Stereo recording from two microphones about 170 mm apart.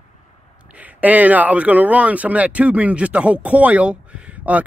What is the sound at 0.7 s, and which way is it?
Speech, 10° right (ahead or behind).